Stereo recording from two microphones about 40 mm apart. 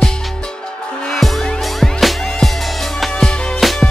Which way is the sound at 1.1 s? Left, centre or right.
Centre.